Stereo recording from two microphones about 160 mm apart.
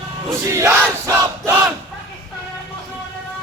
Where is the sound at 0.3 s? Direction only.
20° right (ahead or behind).